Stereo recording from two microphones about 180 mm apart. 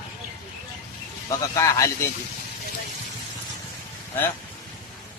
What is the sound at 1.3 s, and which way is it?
Speech, 20° left (ahead or behind).